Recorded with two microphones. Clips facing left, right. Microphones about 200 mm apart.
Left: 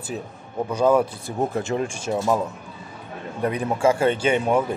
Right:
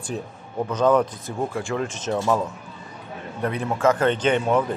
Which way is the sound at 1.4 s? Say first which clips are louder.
Left 2 dB; 20° left (ahead or behind).